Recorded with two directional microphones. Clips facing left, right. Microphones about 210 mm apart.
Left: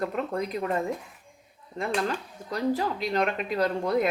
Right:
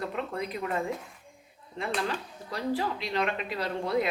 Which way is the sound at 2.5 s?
45° left (ahead or behind).